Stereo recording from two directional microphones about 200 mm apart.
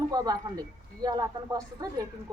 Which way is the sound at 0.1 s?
20° right (ahead or behind).